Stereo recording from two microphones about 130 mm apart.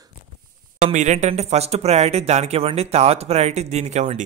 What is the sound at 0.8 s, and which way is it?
Speech, 65° right (ahead or behind).